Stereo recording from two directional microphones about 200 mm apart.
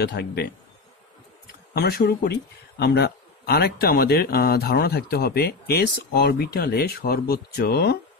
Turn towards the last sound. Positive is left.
turn(degrees=50)  # may be behind; listen again after turning